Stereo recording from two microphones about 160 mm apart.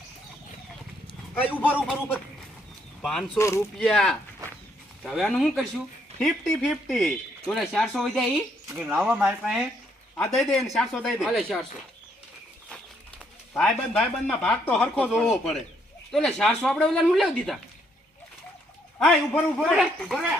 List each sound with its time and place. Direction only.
1.4 s speech: 10° left (ahead or behind)
1.7 s speech: centre (ahead or behind)
3.0 s speech: centre (ahead or behind)
3.3 s speech: 15° left (ahead or behind)
3.8 s speech: 5° left (ahead or behind)
13.6 s speech: 5° left (ahead or behind)
16.1 s speech: 5° left (ahead or behind)
18.9 s speech: 5° left (ahead or behind)